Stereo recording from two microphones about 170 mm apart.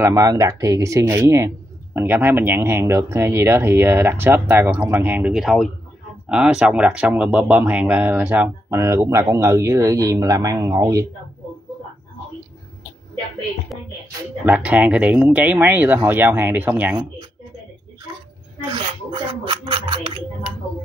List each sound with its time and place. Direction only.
0.0 s speech: 15° right (ahead or behind)
14.4 s speech: 10° right (ahead or behind)
18.7 s speech: 30° right (ahead or behind)